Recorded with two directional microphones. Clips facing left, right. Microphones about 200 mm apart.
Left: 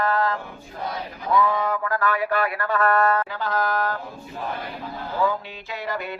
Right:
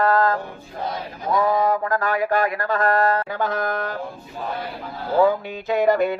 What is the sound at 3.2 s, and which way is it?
Speech, 50° right (ahead or behind).